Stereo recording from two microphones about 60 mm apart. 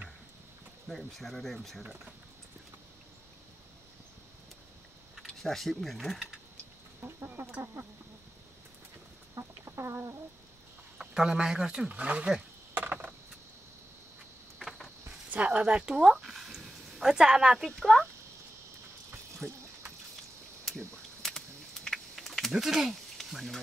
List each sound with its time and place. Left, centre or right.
0.8 s speech: centre
5.2 s speech: centre
7.0 s chicken: right
9.4 s chicken: right
11.0 s speech: centre
11.9 s speech: right
12.7 s a sound: right
14.6 s a sound: centre
15.3 s speech: right
17.6 s speech: centre
21.2 s typing: centre
22.5 s speech: centre